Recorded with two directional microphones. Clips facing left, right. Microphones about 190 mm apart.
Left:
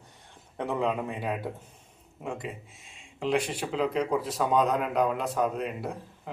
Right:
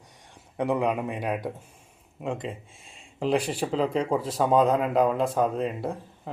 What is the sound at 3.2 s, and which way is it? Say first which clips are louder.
Speech: right 3 dB; 35° right (ahead or behind).